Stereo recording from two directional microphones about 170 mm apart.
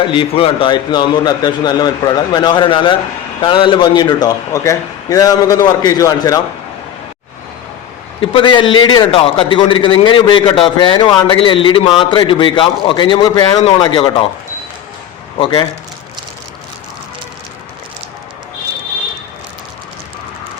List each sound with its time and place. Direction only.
0.1 s a man's voice: 30° left (ahead or behind)
8.2 s a man's voice: 30° left (ahead or behind)
15.4 s a man's voice: 30° left (ahead or behind)